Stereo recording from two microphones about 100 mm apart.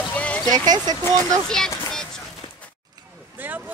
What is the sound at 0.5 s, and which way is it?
Speech, 40° right (ahead or behind).